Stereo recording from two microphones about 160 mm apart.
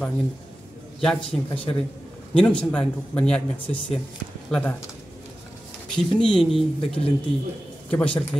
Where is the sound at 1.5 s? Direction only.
35° left (ahead or behind).